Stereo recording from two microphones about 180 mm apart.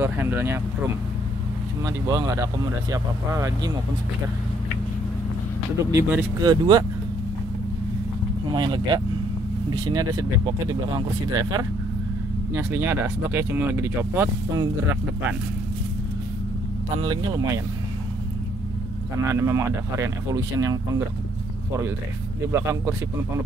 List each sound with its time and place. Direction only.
0.0 s speech: 10° right (ahead or behind)
2.0 s speech: 20° right (ahead or behind)
5.9 s speech: 10° right (ahead or behind)
6.4 s speech: 25° right (ahead or behind)
8.5 s speech: 25° right (ahead or behind)
12.5 s speech: 10° right (ahead or behind)
17.1 s speech: 20° right (ahead or behind)
19.1 s speech: 15° right (ahead or behind)
22.5 s speech: 15° right (ahead or behind)